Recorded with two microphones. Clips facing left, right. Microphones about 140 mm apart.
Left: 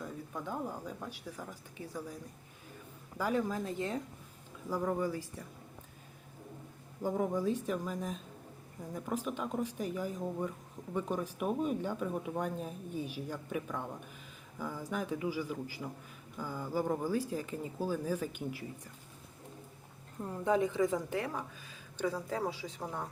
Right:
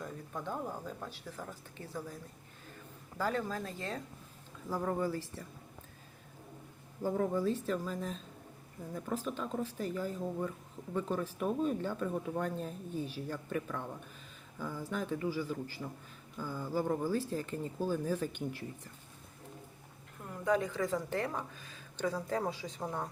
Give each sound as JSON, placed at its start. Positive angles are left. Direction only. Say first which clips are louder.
{"t": 0.0, "sound": "a sound", "louder": "even", "side_deg": 5}
{"t": 0.9, "sound": "speech", "louder": "left 1 dB", "side_deg": 10}
{"t": 3.2, "sound": "speech", "louder": "left 2 dB", "side_deg": 10}
{"t": 7.0, "sound": "speech", "louder": "even", "side_deg": 15}
{"t": 20.1, "sound": "a woman's voice", "louder": "left 1 dB", "side_deg": 25}
{"t": 21.2, "sound": "speech", "louder": "right 1 dB", "side_deg": 5}